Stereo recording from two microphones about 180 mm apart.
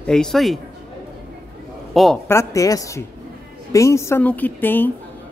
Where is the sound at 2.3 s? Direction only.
15° left (ahead or behind).